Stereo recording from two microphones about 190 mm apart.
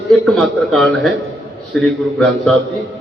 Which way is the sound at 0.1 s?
5° left (ahead or behind).